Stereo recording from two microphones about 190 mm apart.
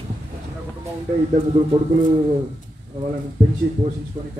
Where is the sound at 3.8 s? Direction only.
35° right (ahead or behind).